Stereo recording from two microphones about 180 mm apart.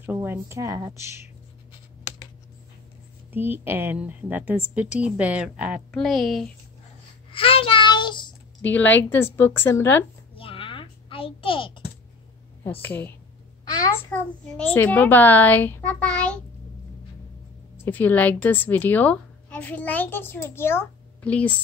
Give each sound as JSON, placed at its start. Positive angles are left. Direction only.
{"t": 0.0, "sound": "a woman's voice", "side_deg": -10}
{"t": 3.3, "sound": "a woman's voice", "side_deg": -10}
{"t": 7.3, "sound": "child singing", "side_deg": 30}
{"t": 8.6, "sound": "a woman's voice", "side_deg": 10}
{"t": 10.3, "sound": "a sound", "side_deg": 30}
{"t": 12.8, "sound": "a woman's voice", "side_deg": 10}
{"t": 14.6, "sound": "a woman's voice", "side_deg": 10}
{"t": 17.8, "sound": "a woman's voice", "side_deg": 10}